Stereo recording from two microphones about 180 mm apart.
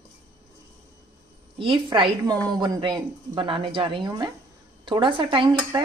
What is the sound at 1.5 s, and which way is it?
A woman's voice, 30° right (ahead or behind).